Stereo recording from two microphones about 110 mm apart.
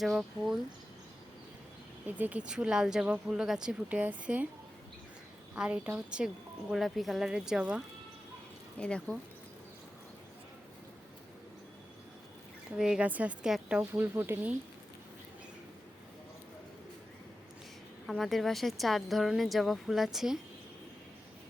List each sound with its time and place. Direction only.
0.0 s speech: 5° right (ahead or behind)
2.0 s speech: 15° right (ahead or behind)
5.5 s speech: 10° right (ahead or behind)
8.8 s speech: 5° left (ahead or behind)
12.7 s speech: 5° right (ahead or behind)
13.9 s speech: 20° right (ahead or behind)
18.0 s speech: centre (ahead or behind)